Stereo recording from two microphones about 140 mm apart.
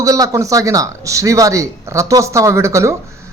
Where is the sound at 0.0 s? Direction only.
25° right (ahead or behind).